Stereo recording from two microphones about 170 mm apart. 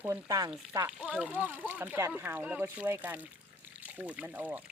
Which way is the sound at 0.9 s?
5° right (ahead or behind).